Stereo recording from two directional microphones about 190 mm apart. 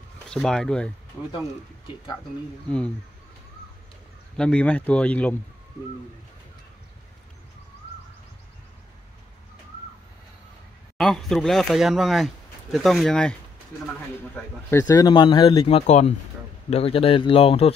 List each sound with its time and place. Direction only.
0.3 s speech: 5° left (ahead or behind)
4.4 s speech: 5° left (ahead or behind)
11.0 s speech: centre (ahead or behind)
14.3 s speech: 15° left (ahead or behind); by 17.7 s 30° left (ahead or behind)